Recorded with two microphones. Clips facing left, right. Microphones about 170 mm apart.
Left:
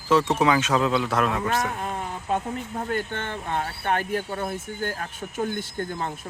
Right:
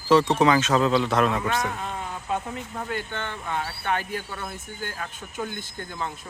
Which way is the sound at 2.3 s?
40° left (ahead or behind).